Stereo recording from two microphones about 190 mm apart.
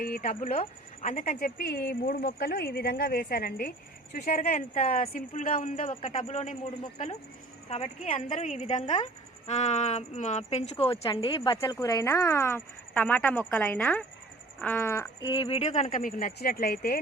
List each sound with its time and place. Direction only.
0.0 s speech: 50° left (ahead or behind)
4.3 s speech: 35° left (ahead or behind)
7.7 s speech: 40° left (ahead or behind); by 15.0 s 15° left (ahead or behind)
15.2 s speech: 30° left (ahead or behind); by 17.0 s 55° left (ahead or behind)